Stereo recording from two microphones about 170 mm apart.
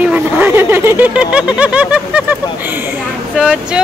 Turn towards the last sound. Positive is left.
turn(degrees=-5)  # may be behind; listen again after turning